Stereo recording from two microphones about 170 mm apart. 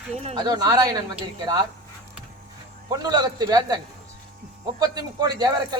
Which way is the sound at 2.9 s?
25° right (ahead or behind).